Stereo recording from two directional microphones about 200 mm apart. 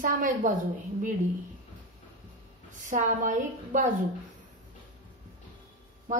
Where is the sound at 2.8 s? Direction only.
40° right (ahead or behind).